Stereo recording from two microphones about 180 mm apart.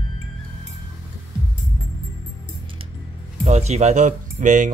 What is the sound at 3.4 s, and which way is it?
Speech, 40° right (ahead or behind).